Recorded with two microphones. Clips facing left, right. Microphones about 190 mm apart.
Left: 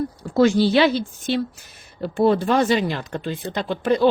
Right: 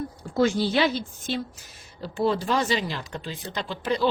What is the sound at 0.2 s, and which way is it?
A woman's voice, 75° left (ahead or behind).